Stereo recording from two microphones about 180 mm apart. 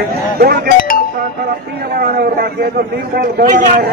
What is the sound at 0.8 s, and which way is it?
Chink, 50° left (ahead or behind).